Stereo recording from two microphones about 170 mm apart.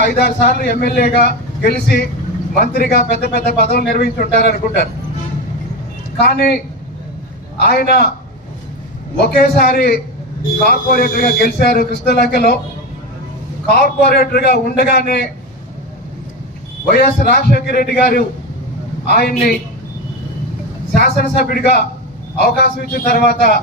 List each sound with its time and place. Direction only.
0.0 s speech: 70° left (ahead or behind)
6.1 s speech: 70° left (ahead or behind)
7.6 s speech: 70° left (ahead or behind)
9.2 s speech: 70° left (ahead or behind)
13.7 s speech: 65° left (ahead or behind)
16.9 s a man's voice: 60° left (ahead or behind)
20.9 s speech: 70° left (ahead or behind)